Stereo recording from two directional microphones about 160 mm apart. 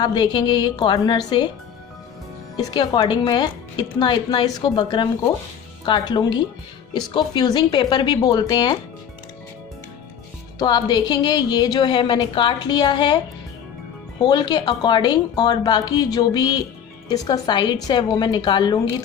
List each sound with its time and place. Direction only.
0.0 s a woman's voice: 25° left (ahead or behind)
2.6 s a woman's voice: 25° left (ahead or behind)
10.6 s a woman's voice: 25° left (ahead or behind)
14.3 s a woman's voice: 25° left (ahead or behind)